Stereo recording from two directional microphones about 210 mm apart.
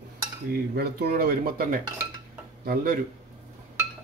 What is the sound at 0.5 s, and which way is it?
Speech, 50° right (ahead or behind).